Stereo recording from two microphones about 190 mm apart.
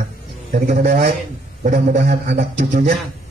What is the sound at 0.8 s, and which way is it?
Speech, 55° right (ahead or behind).